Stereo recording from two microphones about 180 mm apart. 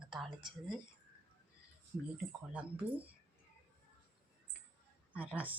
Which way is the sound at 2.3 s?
5° right (ahead or behind).